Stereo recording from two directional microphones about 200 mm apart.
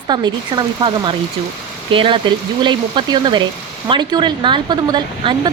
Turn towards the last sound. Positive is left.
turn(degrees=-25)  # may be behind; listen again after turning